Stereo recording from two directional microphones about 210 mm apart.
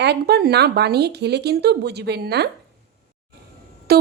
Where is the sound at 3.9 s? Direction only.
45° right (ahead or behind).